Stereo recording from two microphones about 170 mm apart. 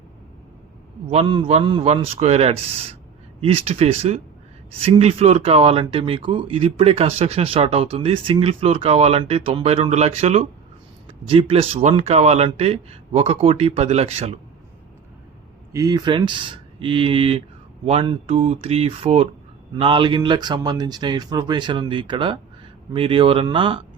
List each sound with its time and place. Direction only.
1.1 s speech: 30° right (ahead or behind)
15.7 s speech: 20° right (ahead or behind)